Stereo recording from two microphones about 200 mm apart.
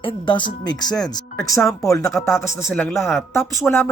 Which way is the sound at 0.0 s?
25° left (ahead or behind).